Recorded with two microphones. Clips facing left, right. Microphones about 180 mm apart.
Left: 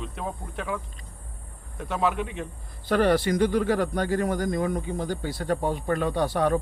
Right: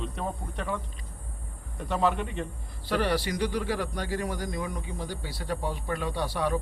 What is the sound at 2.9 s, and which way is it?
Speech, 50° left (ahead or behind).